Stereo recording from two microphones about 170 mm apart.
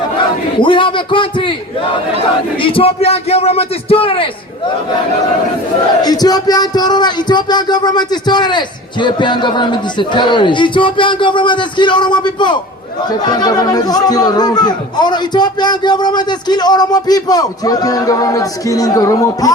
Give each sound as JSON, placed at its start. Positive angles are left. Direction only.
{"t": 0.6, "sound": "speech", "side_deg": 30}
{"t": 2.6, "sound": "a man's voice", "side_deg": 30}
{"t": 6.0, "sound": "speech", "side_deg": 25}